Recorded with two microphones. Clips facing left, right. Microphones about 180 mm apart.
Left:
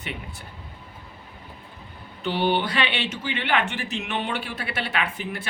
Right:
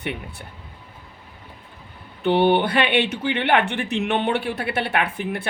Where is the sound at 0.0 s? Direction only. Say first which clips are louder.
Right 6 dB; 60° right (ahead or behind).